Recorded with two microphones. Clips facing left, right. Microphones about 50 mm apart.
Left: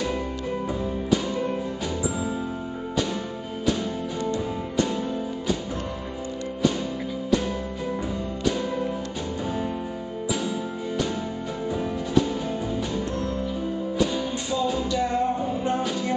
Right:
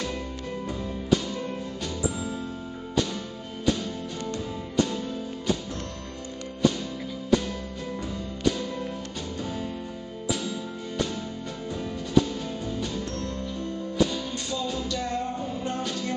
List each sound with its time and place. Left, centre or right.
1.3 s music: centre
12.7 s music: centre